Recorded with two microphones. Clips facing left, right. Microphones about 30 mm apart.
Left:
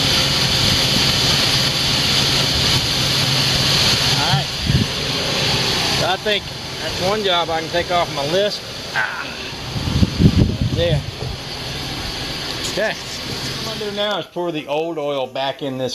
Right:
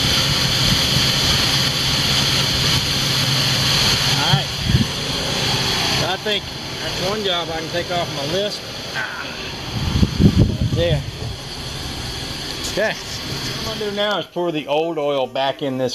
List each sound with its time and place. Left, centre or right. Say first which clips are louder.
0.0 s vehicle: left 1 dB; centre
7.3 s speech: left 4 dB; centre
10.8 s speech: even; left
12.8 s speech: right 2 dB; centre